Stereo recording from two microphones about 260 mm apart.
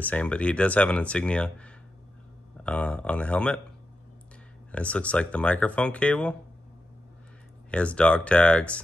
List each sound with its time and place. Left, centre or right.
0.0 s speech: centre
4.7 s speech: centre
7.7 s speech: centre